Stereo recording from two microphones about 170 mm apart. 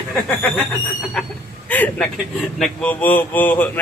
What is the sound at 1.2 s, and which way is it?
Speech, 5° left (ahead or behind).